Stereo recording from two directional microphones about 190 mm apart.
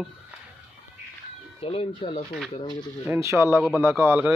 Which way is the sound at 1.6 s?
30° left (ahead or behind).